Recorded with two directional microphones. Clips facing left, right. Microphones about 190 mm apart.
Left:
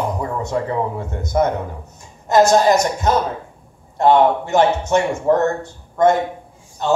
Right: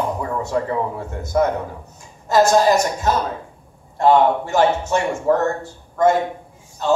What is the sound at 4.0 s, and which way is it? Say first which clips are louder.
A man's voice: left 1 dB; 20° left (ahead or behind).